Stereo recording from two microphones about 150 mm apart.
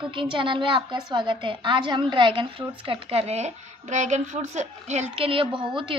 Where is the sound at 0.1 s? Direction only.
35° right (ahead or behind).